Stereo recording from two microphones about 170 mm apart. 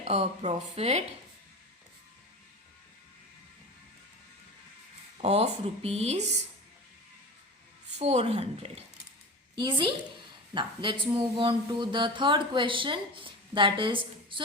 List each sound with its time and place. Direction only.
0.0 s speech: 40° right (ahead or behind)
5.1 s speech: 40° right (ahead or behind)
7.9 s speech: 40° right (ahead or behind)
9.6 s a sound: 25° right (ahead or behind)